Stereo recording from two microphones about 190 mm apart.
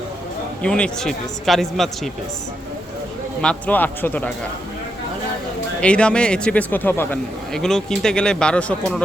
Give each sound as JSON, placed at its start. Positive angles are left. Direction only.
{"t": 0.6, "sound": "a man's voice", "side_deg": 5}
{"t": 3.4, "sound": "speech", "side_deg": 5}
{"t": 5.8, "sound": "a man's voice", "side_deg": 5}